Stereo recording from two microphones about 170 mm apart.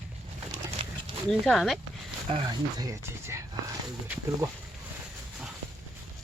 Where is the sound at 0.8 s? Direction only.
35° right (ahead or behind).